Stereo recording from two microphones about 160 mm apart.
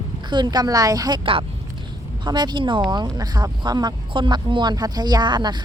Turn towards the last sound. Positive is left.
turn(degrees=-25)  # may be behind; listen again after turning